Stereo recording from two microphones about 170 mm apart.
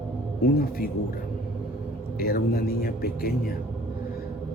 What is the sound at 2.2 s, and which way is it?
Speech, 65° left (ahead or behind).